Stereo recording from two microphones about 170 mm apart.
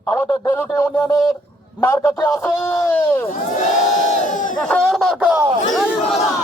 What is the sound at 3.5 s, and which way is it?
Crowd, 45° left (ahead or behind).